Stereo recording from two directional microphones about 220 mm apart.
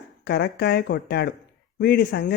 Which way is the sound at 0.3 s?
45° left (ahead or behind).